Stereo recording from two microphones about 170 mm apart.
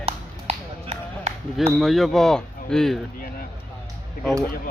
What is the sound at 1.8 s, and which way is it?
Speech, centre (ahead or behind).